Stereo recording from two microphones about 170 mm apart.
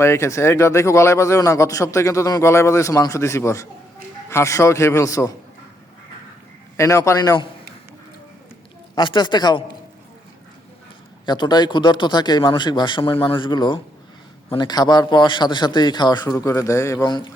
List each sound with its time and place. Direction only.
0.0 s a man's voice: 15° left (ahead or behind)
6.7 s a man's voice: 15° left (ahead or behind)
9.0 s a man's voice: 25° left (ahead or behind)
11.3 s a man's voice: 25° left (ahead or behind)